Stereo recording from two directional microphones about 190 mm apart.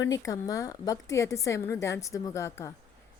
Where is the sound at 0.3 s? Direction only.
20° left (ahead or behind).